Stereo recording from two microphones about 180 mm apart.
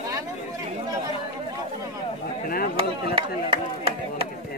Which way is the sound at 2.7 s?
30° right (ahead or behind).